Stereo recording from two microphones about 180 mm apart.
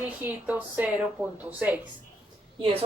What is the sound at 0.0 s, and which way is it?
Speech, 10° right (ahead or behind).